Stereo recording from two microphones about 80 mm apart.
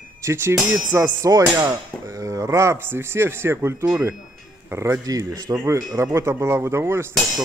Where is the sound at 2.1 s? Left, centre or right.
Right.